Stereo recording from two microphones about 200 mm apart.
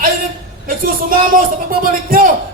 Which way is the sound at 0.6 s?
45° right (ahead or behind).